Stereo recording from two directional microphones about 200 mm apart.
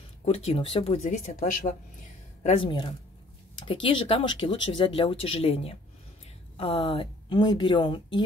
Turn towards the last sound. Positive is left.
turn(degrees=25)  # may be behind; listen again after turning